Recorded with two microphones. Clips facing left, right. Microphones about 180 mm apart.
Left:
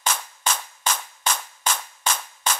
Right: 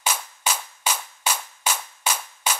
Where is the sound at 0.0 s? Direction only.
10° right (ahead or behind).